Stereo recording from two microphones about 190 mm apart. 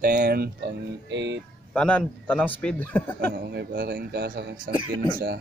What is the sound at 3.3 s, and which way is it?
Speech, 60° right (ahead or behind).